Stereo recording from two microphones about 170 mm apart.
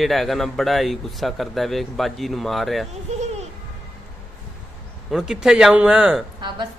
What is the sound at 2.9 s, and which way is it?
Speech, 40° right (ahead or behind).